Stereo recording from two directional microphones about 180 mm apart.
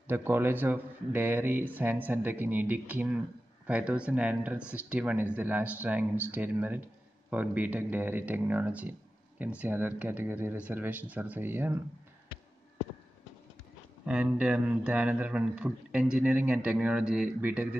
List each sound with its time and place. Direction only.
0.1 s speech: 10° right (ahead or behind)
14.0 s speech: 5° right (ahead or behind)